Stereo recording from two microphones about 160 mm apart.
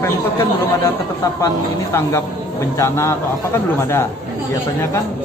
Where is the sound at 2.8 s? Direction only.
15° left (ahead or behind).